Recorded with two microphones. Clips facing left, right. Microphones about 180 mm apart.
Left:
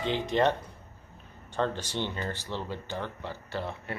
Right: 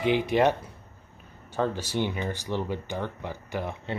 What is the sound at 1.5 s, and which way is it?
Speech, 5° right (ahead or behind).